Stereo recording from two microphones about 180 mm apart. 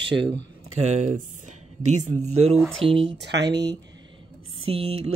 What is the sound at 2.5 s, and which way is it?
Speech, 5° left (ahead or behind).